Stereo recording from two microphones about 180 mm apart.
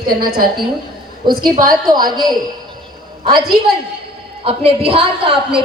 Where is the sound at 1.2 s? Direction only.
25° right (ahead or behind).